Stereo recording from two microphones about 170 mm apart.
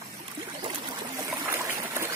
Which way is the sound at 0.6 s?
25° right (ahead or behind).